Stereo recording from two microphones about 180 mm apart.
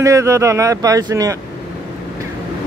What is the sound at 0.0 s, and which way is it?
Speech, 15° right (ahead or behind).